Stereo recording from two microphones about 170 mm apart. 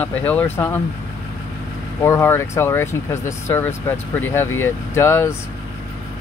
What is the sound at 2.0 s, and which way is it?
Speech, 15° left (ahead or behind).